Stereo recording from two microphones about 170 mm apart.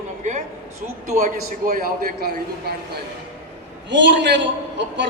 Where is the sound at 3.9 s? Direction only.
90° right.